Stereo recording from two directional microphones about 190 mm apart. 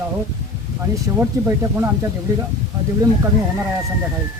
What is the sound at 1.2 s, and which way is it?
Speech, 15° right (ahead or behind).